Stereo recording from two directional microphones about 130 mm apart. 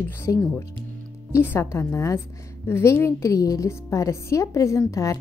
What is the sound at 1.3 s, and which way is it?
A woman's voice, 20° left (ahead or behind).